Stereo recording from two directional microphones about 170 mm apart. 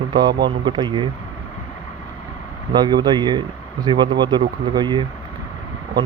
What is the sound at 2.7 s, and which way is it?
Speech, 25° right (ahead or behind).